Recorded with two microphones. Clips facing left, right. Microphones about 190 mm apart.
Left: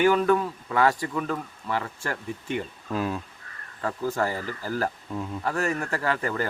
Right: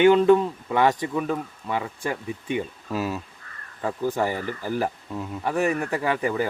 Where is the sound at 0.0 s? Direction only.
25° right (ahead or behind).